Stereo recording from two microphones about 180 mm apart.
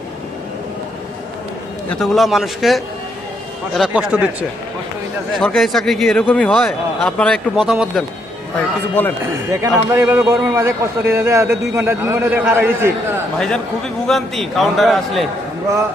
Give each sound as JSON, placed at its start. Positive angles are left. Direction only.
{"t": 1.9, "sound": "a man's voice", "side_deg": 0}
{"t": 9.5, "sound": "speech", "side_deg": -15}
{"t": 13.4, "sound": "a man's voice", "side_deg": 5}